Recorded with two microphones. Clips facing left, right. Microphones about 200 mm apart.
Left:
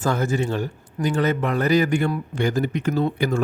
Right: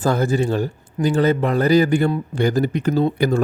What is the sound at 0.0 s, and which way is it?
A man's voice, 35° right (ahead or behind).